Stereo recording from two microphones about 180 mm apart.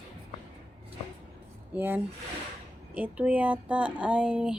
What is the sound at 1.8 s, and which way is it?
Speech, 10° right (ahead or behind).